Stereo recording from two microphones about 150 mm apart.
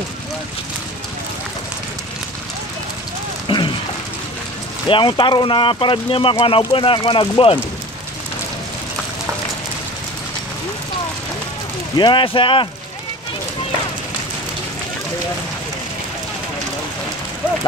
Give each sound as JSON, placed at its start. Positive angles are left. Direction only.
{"t": 3.4, "sound": "a sound", "side_deg": 35}
{"t": 4.8, "sound": "speech", "side_deg": 35}
{"t": 12.0, "sound": "speech", "side_deg": 35}